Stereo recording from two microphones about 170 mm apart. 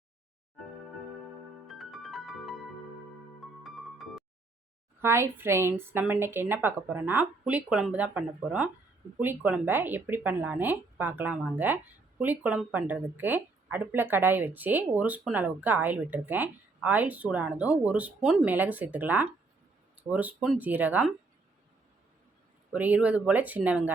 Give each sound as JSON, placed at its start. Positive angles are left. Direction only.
{"t": 1.6, "sound": "music", "side_deg": 0}
{"t": 3.6, "sound": "music", "side_deg": 0}
{"t": 4.9, "sound": "a woman's voice", "side_deg": -15}
{"t": 22.7, "sound": "a woman's voice", "side_deg": -10}